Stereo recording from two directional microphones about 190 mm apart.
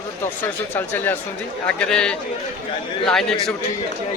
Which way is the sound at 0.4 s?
10° left (ahead or behind).